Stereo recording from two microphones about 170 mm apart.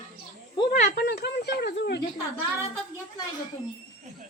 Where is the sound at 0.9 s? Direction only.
70° left (ahead or behind).